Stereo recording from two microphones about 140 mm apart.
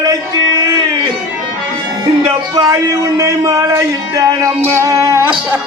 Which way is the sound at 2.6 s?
25° right (ahead or behind).